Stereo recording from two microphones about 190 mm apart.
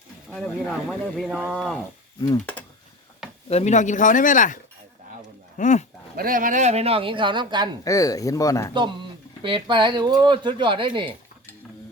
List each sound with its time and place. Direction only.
0.3 s speech: 5° left (ahead or behind)
3.5 s speech: 40° left (ahead or behind)
6.1 s speech: 45° right (ahead or behind); by 7.7 s 25° right (ahead or behind)
7.9 s speech: 15° left (ahead or behind)
9.4 s speech: 25° right (ahead or behind)